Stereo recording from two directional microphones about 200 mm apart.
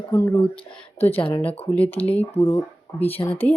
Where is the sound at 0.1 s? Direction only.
10° left (ahead or behind).